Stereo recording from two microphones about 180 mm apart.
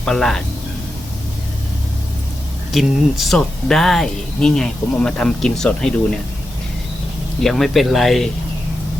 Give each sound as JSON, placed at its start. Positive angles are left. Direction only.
{"t": 0.0, "sound": "speech", "side_deg": 0}
{"t": 2.7, "sound": "speech", "side_deg": 0}
{"t": 7.4, "sound": "speech", "side_deg": 0}